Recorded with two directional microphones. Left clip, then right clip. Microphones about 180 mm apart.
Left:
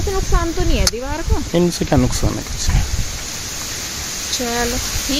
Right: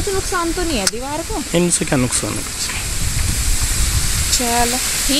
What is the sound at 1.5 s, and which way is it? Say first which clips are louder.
Speech: left 1 dB; 20° left (ahead or behind).